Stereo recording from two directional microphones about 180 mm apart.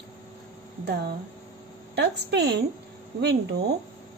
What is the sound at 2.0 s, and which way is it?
Speech, 70° right (ahead or behind).